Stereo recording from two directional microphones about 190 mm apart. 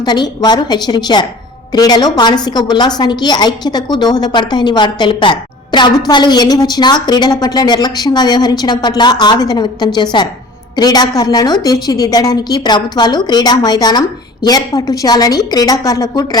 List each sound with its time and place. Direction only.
0.0 s a woman's voice: 20° left (ahead or behind)